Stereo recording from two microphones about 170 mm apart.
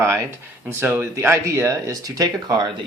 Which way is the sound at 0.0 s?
15° right (ahead or behind).